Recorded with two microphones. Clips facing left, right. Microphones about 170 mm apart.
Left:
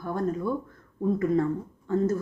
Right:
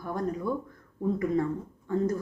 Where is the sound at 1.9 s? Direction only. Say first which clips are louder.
Left 3 dB; 15° right (ahead or behind).